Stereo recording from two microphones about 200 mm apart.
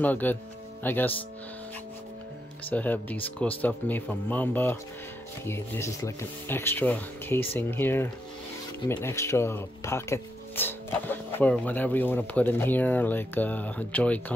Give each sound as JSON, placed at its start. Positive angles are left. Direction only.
{"t": 0.0, "sound": "speech", "side_deg": 10}
{"t": 2.7, "sound": "speech", "side_deg": 10}